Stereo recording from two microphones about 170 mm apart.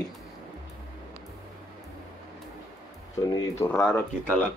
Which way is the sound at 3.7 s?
5° left (ahead or behind).